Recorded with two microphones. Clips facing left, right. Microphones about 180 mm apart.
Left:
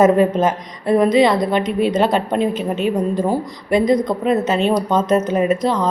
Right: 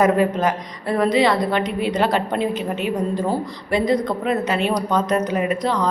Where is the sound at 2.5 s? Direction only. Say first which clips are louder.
Left 4 dB; 15° right (ahead or behind).